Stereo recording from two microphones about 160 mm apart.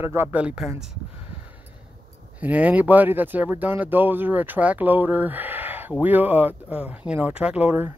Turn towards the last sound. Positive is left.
turn(degrees=-10)  # may be behind; listen again after turning